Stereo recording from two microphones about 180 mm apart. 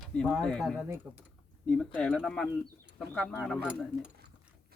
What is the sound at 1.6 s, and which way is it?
Speech, 5° left (ahead or behind).